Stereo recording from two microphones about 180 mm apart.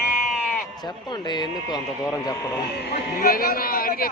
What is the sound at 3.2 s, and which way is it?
Speech, 55° left (ahead or behind).